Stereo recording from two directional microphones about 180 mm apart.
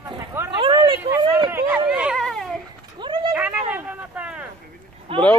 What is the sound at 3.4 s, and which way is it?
Speech, 10° right (ahead or behind).